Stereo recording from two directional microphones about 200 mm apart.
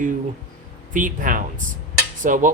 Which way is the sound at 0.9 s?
40° right (ahead or behind).